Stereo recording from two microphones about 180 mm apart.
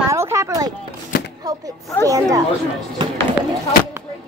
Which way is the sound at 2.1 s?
20° right (ahead or behind).